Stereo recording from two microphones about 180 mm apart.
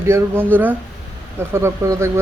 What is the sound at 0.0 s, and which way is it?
Speech, 15° right (ahead or behind).